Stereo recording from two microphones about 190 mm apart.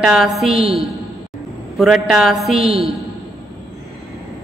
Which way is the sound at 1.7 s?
Centre (ahead or behind).